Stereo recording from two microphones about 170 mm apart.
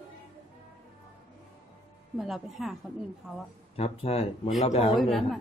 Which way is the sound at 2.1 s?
Centre (ahead or behind).